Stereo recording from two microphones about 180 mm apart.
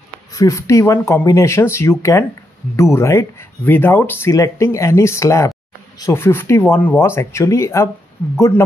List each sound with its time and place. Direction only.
0.3 s speech: 20° left (ahead or behind)